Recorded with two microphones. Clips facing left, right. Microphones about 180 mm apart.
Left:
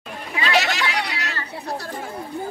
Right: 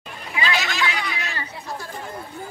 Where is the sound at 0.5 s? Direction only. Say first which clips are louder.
Left 4 dB; 70° left (ahead or behind).